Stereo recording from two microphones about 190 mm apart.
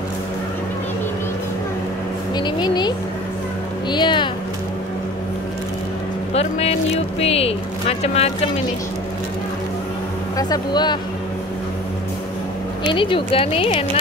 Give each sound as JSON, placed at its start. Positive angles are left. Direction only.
{"t": 2.3, "sound": "speech", "side_deg": 20}
{"t": 3.9, "sound": "speech", "side_deg": 25}
{"t": 6.3, "sound": "speech", "side_deg": 30}
{"t": 10.3, "sound": "speech", "side_deg": 20}
{"t": 12.8, "sound": "speech", "side_deg": 25}